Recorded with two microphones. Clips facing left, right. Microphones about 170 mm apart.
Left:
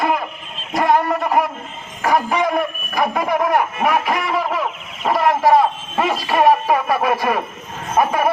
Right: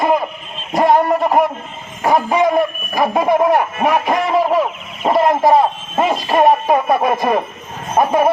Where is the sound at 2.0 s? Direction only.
25° right (ahead or behind).